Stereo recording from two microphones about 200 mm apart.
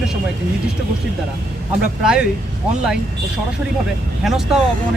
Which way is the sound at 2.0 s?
5° right (ahead or behind).